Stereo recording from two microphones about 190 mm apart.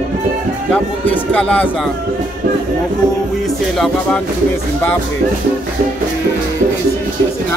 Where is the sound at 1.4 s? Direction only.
5° left (ahead or behind).